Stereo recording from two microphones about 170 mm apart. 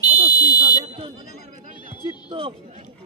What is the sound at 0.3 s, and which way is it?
Fire alarm, 25° left (ahead or behind).